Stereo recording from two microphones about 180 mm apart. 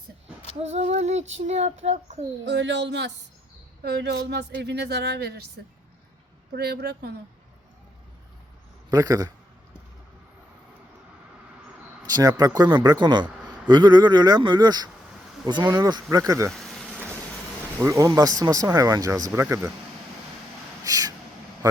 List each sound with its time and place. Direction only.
0.6 s female singing: 40° right (ahead or behind)
1.5 s child singing: 40° right (ahead or behind)
2.4 s speech: 80° right
6.6 s a woman's voice: 65° right (ahead or behind)
8.9 s speech: 20° right (ahead or behind)
12.0 s speech: 20° right (ahead or behind)
16.5 s a sound: centre (ahead or behind)
17.7 s speech: 15° right (ahead or behind)
20.8 s a sound: 20° right (ahead or behind)